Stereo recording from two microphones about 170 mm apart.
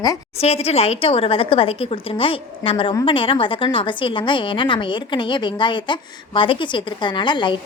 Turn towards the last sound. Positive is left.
turn(degrees=25)  # may be behind; listen again after turning